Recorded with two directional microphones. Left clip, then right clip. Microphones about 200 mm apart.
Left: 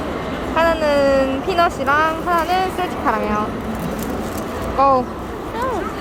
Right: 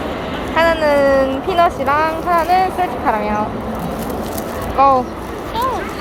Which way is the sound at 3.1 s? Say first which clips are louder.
Even; 5° left (ahead or behind).